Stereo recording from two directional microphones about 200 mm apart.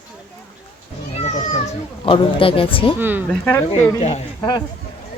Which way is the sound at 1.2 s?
30° left (ahead or behind).